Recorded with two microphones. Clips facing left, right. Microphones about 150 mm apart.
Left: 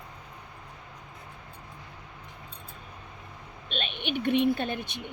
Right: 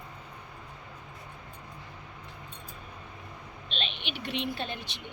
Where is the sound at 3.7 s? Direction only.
50° left (ahead or behind).